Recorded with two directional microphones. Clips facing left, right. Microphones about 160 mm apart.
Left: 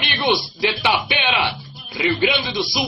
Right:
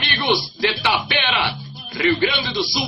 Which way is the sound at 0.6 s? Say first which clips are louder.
Left 2 dB; 15° left (ahead or behind).